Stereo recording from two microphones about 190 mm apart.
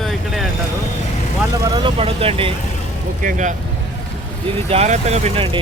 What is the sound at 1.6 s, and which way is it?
Speech, 25° right (ahead or behind).